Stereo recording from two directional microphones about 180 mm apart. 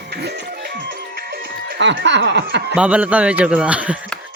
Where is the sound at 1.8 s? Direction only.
80° right.